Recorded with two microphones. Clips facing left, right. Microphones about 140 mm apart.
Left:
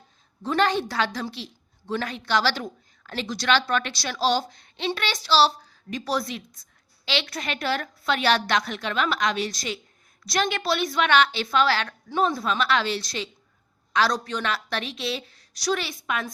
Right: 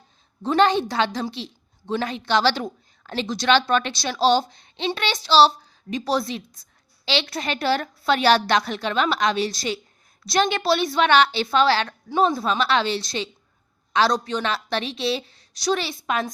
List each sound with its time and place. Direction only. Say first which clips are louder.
0.4 s a child's voice: right 4 dB; 25° right (ahead or behind)